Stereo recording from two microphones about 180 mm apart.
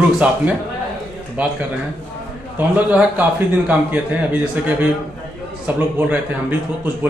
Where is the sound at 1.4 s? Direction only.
10° right (ahead or behind).